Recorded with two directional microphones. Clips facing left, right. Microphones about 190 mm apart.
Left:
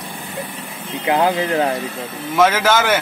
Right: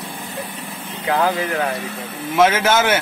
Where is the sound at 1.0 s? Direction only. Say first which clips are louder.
Left 2 dB; 25° left (ahead or behind).